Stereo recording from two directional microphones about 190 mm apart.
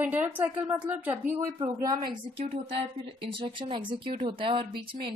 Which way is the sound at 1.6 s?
20° right (ahead or behind).